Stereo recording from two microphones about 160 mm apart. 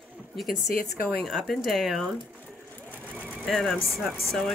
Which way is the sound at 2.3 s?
10° left (ahead or behind).